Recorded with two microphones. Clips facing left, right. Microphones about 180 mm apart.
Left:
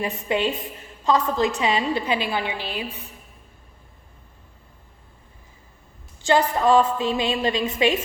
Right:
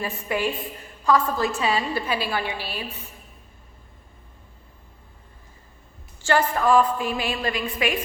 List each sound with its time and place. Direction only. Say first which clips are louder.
0.0 s a woman's voice: left 2 dB; 20° left (ahead or behind)
6.2 s a woman's voice: left 2 dB; 20° left (ahead or behind)